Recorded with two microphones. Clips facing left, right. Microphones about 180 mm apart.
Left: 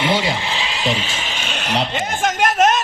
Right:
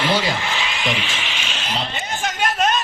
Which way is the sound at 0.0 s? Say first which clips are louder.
Left 1 dB; 25° left (ahead or behind).